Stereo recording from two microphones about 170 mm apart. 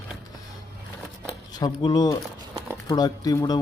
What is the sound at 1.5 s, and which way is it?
Speech, 25° left (ahead or behind).